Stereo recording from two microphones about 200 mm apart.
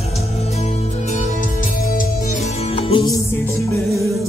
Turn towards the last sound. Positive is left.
turn(degrees=25)  # may be behind; listen again after turning